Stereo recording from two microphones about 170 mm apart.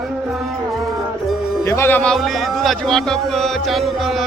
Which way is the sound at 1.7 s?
15° left (ahead or behind).